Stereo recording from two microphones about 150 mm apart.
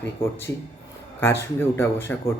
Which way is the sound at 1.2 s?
15° left (ahead or behind).